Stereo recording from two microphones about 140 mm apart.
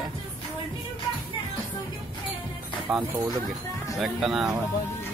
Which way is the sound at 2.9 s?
Centre (ahead or behind).